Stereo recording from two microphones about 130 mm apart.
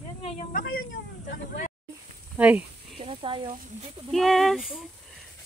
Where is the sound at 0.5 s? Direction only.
90° left.